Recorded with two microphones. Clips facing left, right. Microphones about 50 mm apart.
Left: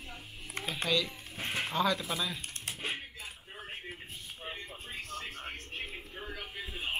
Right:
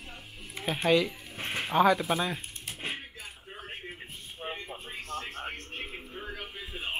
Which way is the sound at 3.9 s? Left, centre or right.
Right.